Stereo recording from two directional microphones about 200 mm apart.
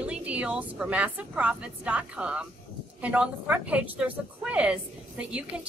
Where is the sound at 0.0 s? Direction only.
5° right (ahead or behind).